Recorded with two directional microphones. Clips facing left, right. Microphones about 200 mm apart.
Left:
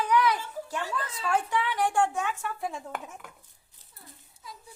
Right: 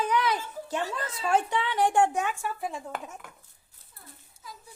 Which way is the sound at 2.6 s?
Centre (ahead or behind).